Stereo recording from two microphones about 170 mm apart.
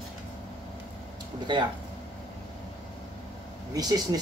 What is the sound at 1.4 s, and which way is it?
Speech, 25° right (ahead or behind).